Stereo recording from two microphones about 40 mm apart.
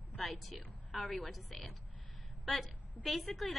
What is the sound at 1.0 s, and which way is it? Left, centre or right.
Speech, left.